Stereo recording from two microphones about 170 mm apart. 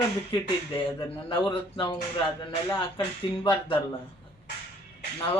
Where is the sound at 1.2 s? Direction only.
30° left (ahead or behind).